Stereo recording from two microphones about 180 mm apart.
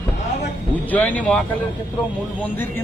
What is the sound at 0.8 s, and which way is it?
Speech, 10° left (ahead or behind).